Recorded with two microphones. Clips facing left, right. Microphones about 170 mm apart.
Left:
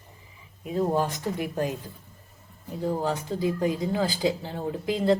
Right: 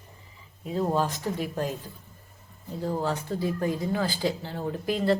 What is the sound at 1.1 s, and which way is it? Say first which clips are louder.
Speech: left 1 dB; 15° left (ahead or behind).